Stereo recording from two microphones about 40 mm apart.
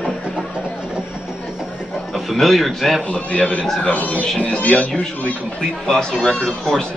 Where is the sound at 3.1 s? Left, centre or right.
Left.